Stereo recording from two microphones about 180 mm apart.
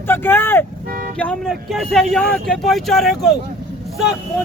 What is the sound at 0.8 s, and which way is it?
Vehicle, 55° right (ahead or behind).